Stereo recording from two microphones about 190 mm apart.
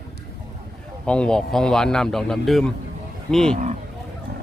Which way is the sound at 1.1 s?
5° left (ahead or behind).